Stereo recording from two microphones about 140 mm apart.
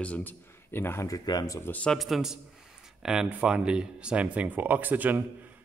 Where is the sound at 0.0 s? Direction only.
10° left (ahead or behind); by 1.6 s 25° left (ahead or behind).